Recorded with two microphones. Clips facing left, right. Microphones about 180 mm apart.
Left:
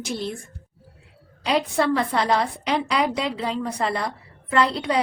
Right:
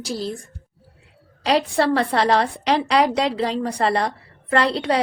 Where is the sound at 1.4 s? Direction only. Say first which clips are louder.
Right 3 dB; 75° right (ahead or behind).